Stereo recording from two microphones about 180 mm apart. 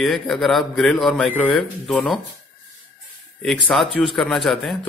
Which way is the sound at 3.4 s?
5° left (ahead or behind).